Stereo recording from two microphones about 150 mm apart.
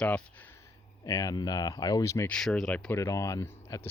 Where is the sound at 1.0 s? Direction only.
25° left (ahead or behind).